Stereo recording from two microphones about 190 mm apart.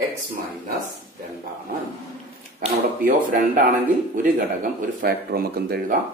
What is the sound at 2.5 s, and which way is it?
Speech, 50° right (ahead or behind).